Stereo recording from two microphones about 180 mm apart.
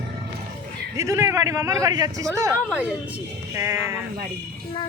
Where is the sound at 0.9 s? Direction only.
20° right (ahead or behind).